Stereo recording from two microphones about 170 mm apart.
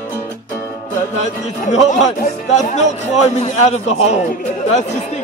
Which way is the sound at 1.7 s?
45° left (ahead or behind).